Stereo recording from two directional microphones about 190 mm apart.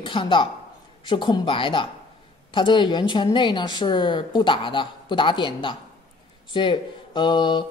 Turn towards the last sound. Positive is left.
turn(degrees=25)  # may be behind; listen again after turning